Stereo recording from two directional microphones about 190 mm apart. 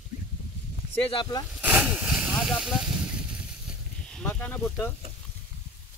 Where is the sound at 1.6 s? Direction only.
5° right (ahead or behind).